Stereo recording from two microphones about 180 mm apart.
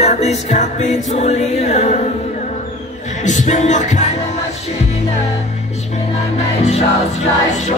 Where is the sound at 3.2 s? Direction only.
40° left (ahead or behind).